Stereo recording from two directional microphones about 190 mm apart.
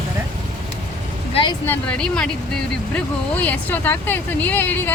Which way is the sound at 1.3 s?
25° left (ahead or behind).